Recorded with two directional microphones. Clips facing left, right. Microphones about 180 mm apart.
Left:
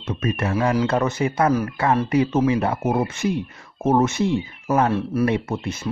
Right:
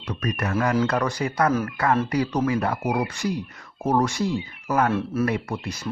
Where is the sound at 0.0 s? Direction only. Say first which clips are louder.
Left 3 dB; 25° left (ahead or behind).